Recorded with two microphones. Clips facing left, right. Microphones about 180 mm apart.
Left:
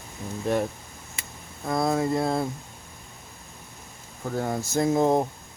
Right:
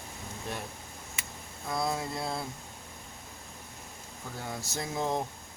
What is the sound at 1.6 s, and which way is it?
Speech, 55° left (ahead or behind).